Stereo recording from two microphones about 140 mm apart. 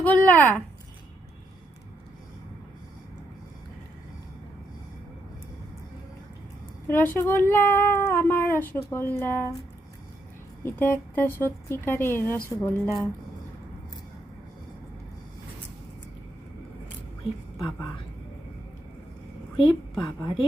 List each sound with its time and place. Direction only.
0.0 s a sound: 10° left (ahead or behind)
6.8 s speech: 15° left (ahead or behind)
10.6 s speech: 15° left (ahead or behind)
19.5 s a woman's voice: 35° left (ahead or behind)